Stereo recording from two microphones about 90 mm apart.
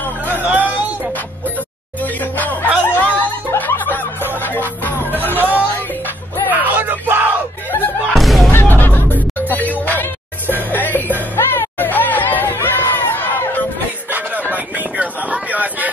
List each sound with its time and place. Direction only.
0.4 s music: 20° right (ahead or behind)
2.3 s music: 20° left (ahead or behind)
6.5 s music: 20° right (ahead or behind)
8.1 s a sound: centre (ahead or behind)
8.5 s a sound: 20° left (ahead or behind)
9.5 s music: 20° left (ahead or behind)
14.5 s vehicle: 20° right (ahead or behind)